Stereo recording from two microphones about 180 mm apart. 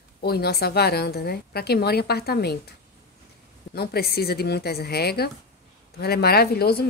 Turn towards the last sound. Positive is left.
turn(degrees=60)  # may be behind; listen again after turning